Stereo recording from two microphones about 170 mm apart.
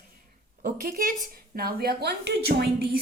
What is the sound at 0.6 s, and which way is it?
A woman's voice, 55° right (ahead or behind).